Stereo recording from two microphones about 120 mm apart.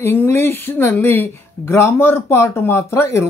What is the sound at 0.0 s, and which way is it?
Speech, 20° left (ahead or behind).